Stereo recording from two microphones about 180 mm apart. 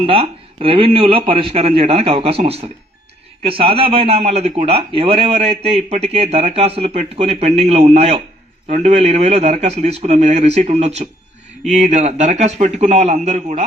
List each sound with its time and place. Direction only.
0.0 s a man's voice: 30° right (ahead or behind)